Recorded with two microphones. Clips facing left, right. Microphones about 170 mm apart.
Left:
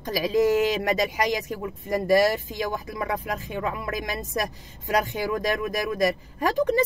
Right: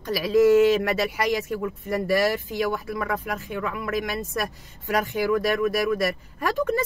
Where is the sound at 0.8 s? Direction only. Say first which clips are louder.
Even; 20° left (ahead or behind).